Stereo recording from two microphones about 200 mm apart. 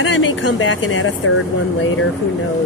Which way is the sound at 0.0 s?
75° left (ahead or behind).